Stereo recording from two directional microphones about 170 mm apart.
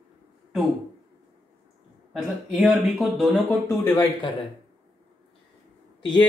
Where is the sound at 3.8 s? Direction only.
25° left (ahead or behind).